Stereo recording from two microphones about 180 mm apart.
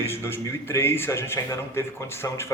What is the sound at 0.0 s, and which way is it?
Speech, 15° left (ahead or behind).